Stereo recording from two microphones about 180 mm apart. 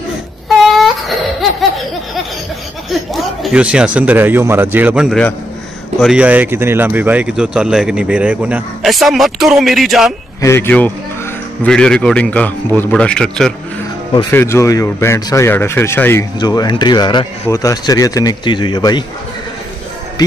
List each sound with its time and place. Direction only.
2.9 s speech: centre (ahead or behind)
10.4 s speech: 15° left (ahead or behind)
14.3 s speech: 15° left (ahead or behind)